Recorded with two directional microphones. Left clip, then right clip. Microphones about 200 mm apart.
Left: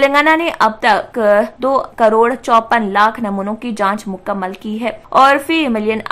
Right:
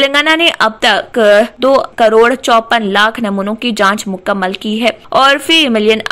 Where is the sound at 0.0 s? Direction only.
20° right (ahead or behind).